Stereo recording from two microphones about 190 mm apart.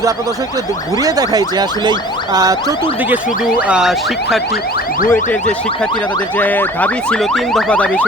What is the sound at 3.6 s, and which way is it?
Car alarm, 5° right (ahead or behind).